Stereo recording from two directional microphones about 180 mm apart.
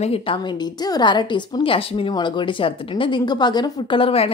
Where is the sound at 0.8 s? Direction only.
25° left (ahead or behind).